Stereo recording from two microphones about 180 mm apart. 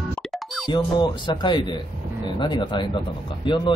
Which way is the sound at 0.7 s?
25° left (ahead or behind).